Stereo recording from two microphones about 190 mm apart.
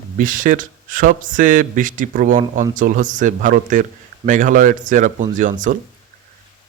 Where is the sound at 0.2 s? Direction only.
45° right (ahead or behind).